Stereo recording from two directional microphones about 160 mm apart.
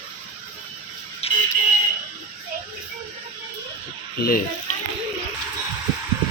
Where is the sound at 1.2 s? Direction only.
40° left (ahead or behind).